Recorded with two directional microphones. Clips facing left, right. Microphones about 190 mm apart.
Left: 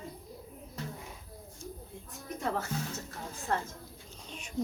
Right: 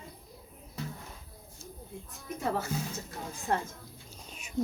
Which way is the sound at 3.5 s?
15° right (ahead or behind).